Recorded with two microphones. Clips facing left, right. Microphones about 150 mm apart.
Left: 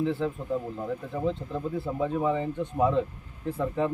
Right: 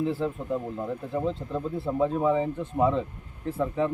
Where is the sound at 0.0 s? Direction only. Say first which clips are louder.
Even; 5° right (ahead or behind).